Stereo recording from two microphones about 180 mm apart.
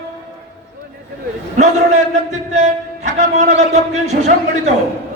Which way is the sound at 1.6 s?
40° right (ahead or behind).